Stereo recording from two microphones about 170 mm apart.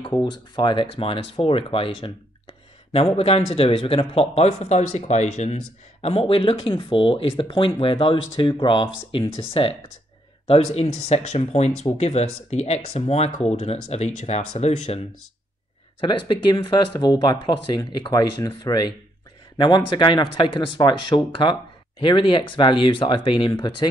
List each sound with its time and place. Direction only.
0.2 s speech: 25° left (ahead or behind)
3.2 s speech: 35° left (ahead or behind)
16.1 s speech: 25° left (ahead or behind)